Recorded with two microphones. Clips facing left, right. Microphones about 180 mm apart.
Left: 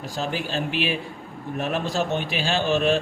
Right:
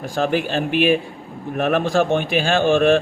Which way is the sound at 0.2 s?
60° right (ahead or behind).